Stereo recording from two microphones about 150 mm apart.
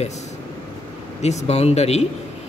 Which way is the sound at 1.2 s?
45° left (ahead or behind).